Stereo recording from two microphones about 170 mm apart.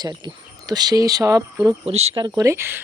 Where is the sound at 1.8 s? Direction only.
35° right (ahead or behind).